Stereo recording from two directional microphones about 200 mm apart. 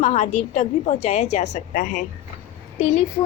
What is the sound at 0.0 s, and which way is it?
A woman's voice, 35° left (ahead or behind).